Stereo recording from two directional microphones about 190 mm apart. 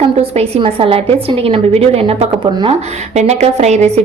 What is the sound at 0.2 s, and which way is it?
A woman's voice, 30° right (ahead or behind).